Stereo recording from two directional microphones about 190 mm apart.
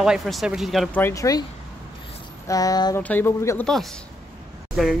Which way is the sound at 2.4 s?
20° left (ahead or behind).